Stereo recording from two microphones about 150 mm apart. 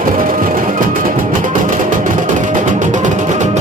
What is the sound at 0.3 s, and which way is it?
Music, 65° right (ahead or behind).